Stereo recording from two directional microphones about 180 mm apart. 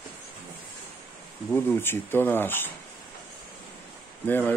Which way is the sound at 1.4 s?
10° left (ahead or behind).